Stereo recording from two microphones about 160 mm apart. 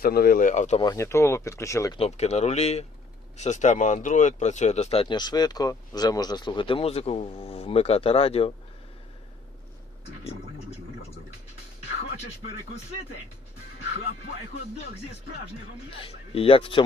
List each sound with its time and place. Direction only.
0.0 s speech: 70° left (ahead or behind); by 0.8 s 45° left (ahead or behind)
0.8 s speech: 20° left (ahead or behind)
2.0 s speech: 40° left (ahead or behind)
16.0 s speech: 35° left (ahead or behind)